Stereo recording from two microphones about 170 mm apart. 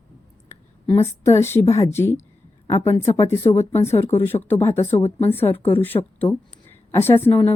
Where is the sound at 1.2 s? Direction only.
15° left (ahead or behind).